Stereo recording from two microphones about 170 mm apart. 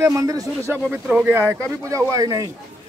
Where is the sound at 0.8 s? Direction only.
10° right (ahead or behind).